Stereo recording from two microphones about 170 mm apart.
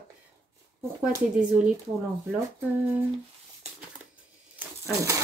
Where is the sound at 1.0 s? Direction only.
10° right (ahead or behind).